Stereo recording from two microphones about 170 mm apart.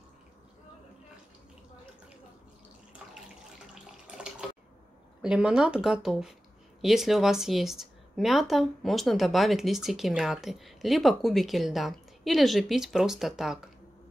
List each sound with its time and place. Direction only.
3.7 s water tap: 5° right (ahead or behind)
5.2 s speech: 5° right (ahead or behind)